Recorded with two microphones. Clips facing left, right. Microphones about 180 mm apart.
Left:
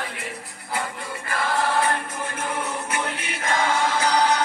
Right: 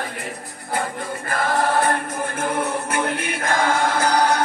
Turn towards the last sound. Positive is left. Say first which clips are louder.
# right 2 dB
turn(degrees=-50)  # may be behind; listen again after turning